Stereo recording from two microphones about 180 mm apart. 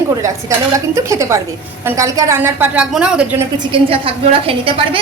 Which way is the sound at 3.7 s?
30° right (ahead or behind).